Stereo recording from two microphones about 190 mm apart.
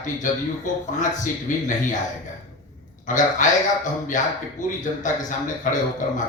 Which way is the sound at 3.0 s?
40° left (ahead or behind).